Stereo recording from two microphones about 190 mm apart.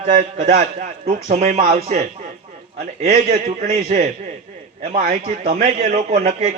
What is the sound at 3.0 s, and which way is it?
Speech, 50° right (ahead or behind).